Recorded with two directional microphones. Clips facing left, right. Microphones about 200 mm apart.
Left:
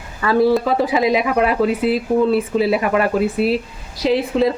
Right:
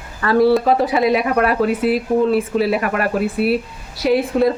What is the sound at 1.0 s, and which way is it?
Speech, 20° left (ahead or behind).